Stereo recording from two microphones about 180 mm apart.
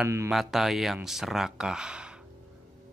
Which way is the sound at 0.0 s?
15° right (ahead or behind).